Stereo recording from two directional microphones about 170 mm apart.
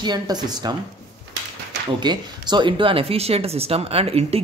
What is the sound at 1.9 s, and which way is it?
Speech, 25° right (ahead or behind).